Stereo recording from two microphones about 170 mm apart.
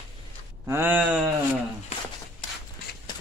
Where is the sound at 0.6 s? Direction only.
15° right (ahead or behind).